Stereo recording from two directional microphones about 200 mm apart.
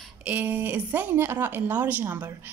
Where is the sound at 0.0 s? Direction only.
5° right (ahead or behind).